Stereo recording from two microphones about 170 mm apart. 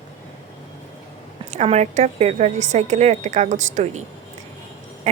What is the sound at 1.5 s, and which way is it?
A woman's voice, 40° right (ahead or behind).